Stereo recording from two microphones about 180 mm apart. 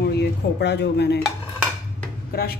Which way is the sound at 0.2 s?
70° left (ahead or behind).